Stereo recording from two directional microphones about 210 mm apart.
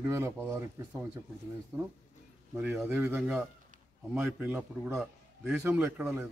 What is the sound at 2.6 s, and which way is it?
A man's voice, 10° right (ahead or behind).